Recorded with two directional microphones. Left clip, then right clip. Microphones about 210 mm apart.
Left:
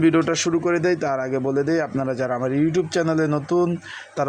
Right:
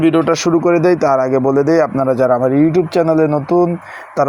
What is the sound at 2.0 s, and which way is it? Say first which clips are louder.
A man's voice: right 11 dB; 20° right (ahead or behind).